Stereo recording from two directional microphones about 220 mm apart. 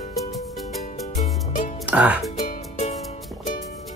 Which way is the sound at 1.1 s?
35° left (ahead or behind).